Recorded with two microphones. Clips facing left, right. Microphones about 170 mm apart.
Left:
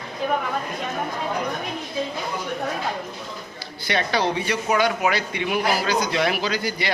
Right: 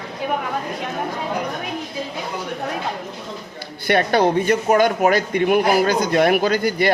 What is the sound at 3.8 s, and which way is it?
Speech, 55° right (ahead or behind).